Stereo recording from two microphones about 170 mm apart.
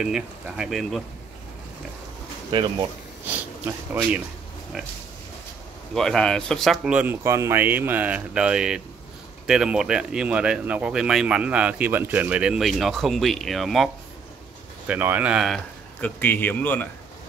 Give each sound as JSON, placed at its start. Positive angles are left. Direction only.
{"t": 0.0, "sound": "speech", "side_deg": -5}
{"t": 2.5, "sound": "speech", "side_deg": -25}
{"t": 3.3, "sound": "speech", "side_deg": -10}
{"t": 5.9, "sound": "speech", "side_deg": 5}
{"t": 14.9, "sound": "speech", "side_deg": -10}